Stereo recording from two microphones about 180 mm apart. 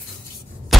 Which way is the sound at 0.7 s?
Centre (ahead or behind).